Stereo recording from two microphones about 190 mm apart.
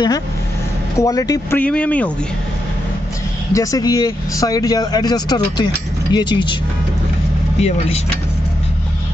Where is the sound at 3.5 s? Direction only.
20° left (ahead or behind).